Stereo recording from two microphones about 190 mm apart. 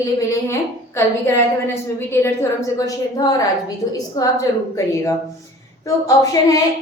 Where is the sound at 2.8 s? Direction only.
20° left (ahead or behind).